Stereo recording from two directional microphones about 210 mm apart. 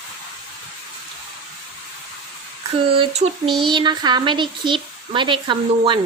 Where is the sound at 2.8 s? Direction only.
25° right (ahead or behind).